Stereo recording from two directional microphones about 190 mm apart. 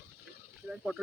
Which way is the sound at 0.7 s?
Centre (ahead or behind).